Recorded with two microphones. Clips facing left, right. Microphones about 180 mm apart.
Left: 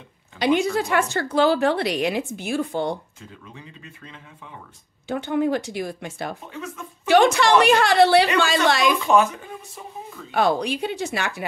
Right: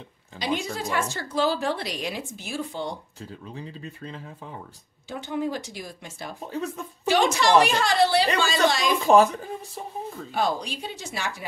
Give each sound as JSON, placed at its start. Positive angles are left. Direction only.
{"t": 0.4, "sound": "a woman's voice", "side_deg": 65}
{"t": 3.2, "sound": "speech", "side_deg": -35}
{"t": 5.0, "sound": "a woman's voice", "side_deg": 60}
{"t": 6.4, "sound": "speech", "side_deg": -35}
{"t": 7.1, "sound": "a woman's voice", "side_deg": 60}
{"t": 9.0, "sound": "speech", "side_deg": -35}
{"t": 10.3, "sound": "a woman's voice", "side_deg": 65}